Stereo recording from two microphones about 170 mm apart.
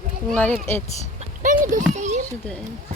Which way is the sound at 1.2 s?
50° right (ahead or behind).